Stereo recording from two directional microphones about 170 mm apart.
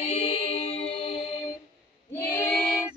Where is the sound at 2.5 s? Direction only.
Centre (ahead or behind).